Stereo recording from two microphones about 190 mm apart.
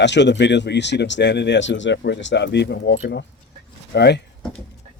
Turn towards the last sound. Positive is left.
turn(degrees=60)  # may be behind; listen again after turning